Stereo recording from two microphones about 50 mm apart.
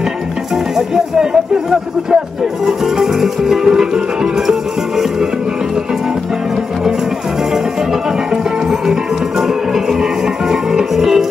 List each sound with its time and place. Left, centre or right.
0.7 s music: centre
7.5 s music: centre